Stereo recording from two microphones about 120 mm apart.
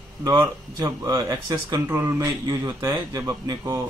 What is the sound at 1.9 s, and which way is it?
A man's voice, 20° right (ahead or behind).